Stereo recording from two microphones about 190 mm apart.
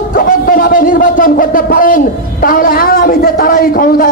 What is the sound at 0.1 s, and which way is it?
A man's voice, 50° left (ahead or behind).